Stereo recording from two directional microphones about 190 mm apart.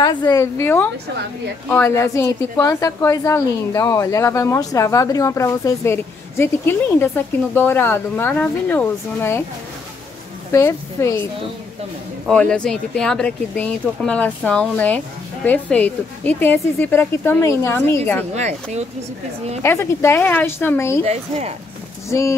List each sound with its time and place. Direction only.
0.0 s a woman's voice: 20° left (ahead or behind)
10.5 s a woman's voice: 15° left (ahead or behind)
12.3 s a woman's voice: 5° left (ahead or behind)
18.3 s a woman's voice: 35° right (ahead or behind)
19.6 s a woman's voice: 15° left (ahead or behind)
21.0 s a woman's voice: 35° right (ahead or behind)